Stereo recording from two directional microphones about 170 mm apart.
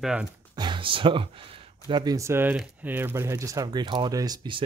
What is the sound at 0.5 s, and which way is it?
Speech, 25° right (ahead or behind).